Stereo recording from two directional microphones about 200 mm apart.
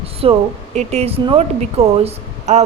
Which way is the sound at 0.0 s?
30° right (ahead or behind).